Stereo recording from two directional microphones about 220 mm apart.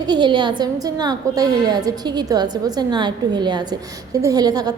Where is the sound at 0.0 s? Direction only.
20° right (ahead or behind).